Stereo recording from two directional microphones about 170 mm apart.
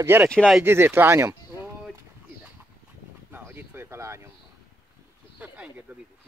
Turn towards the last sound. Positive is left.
turn(degrees=-10)  # may be behind; listen again after turning